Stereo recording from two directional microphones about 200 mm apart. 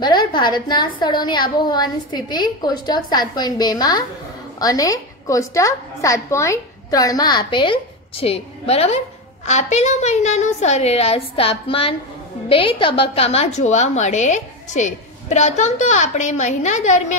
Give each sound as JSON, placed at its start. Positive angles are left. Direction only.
{"t": 0.0, "sound": "a woman's voice", "side_deg": 20}